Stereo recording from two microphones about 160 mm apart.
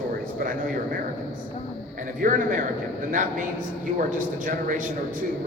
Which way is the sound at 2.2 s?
55° right (ahead or behind).